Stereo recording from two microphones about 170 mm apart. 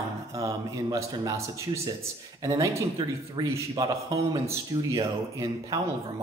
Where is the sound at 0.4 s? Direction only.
20° right (ahead or behind).